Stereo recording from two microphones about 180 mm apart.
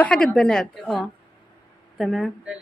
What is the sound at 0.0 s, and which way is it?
A woman's voice, 5° left (ahead or behind).